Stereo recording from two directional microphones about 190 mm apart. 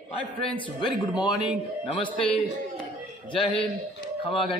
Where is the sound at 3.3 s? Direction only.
25° left (ahead or behind).